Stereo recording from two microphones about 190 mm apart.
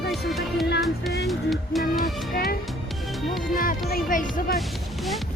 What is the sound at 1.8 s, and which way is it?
Music, 50° left (ahead or behind).